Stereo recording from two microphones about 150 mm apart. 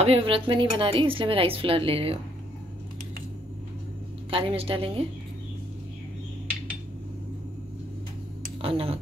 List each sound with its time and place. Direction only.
0.0 s speech: 40° right (ahead or behind)
4.3 s speech: 35° right (ahead or behind)
8.5 s speech: 40° right (ahead or behind)